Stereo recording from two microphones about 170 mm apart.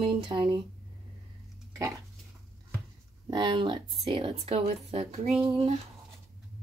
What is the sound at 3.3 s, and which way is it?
Speech, 25° right (ahead or behind).